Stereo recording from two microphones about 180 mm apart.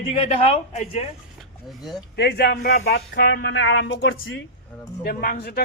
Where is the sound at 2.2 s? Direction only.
70° left (ahead or behind); by 2.9 s 50° left (ahead or behind).